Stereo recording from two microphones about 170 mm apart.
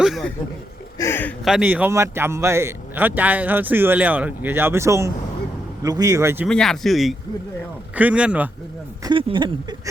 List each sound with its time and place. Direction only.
0.0 s a sound: centre (ahead or behind)
0.9 s speech: 15° left (ahead or behind)
1.5 s a man's voice: 5° right (ahead or behind)
6.5 s a man's voice: centre (ahead or behind)
9.0 s a man's voice: 30° right (ahead or behind)